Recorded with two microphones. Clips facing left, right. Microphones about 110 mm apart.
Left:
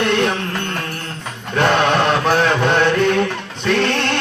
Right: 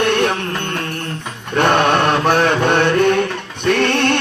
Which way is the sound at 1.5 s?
55° right (ahead or behind).